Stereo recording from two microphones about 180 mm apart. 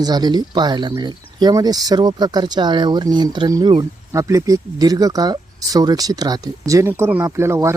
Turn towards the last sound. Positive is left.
turn(degrees=-15)  # may be behind; listen again after turning